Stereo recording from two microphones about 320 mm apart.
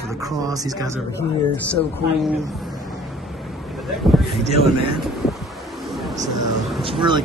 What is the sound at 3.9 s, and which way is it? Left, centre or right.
Speech, centre.